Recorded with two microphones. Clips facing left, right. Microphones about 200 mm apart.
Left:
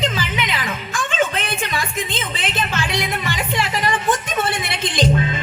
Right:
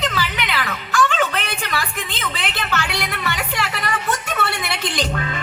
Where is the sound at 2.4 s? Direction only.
65° right (ahead or behind).